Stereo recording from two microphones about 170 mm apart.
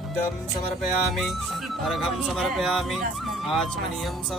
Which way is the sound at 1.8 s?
Centre (ahead or behind).